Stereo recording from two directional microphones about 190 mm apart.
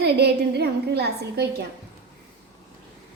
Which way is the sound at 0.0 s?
60° right (ahead or behind).